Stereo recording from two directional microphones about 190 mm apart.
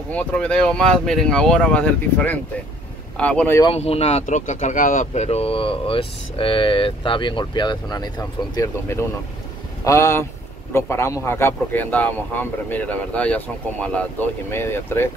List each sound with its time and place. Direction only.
0.1 s speech: 5° left (ahead or behind)
3.6 s speech: 30° left (ahead or behind); by 15.0 s 10° left (ahead or behind)